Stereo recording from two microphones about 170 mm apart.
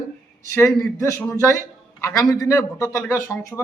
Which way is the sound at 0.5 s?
15° left (ahead or behind).